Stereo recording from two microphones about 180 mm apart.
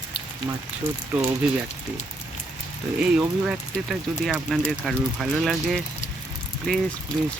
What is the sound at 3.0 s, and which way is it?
Speech, 5° right (ahead or behind).